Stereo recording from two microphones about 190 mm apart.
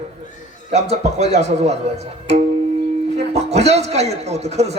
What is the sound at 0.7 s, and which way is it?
A man's voice, 35° right (ahead or behind).